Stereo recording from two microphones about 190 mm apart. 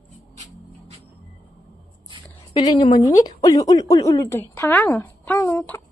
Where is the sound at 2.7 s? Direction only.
25° left (ahead or behind).